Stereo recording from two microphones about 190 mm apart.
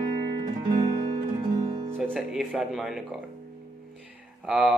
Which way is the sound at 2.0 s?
Centre (ahead or behind).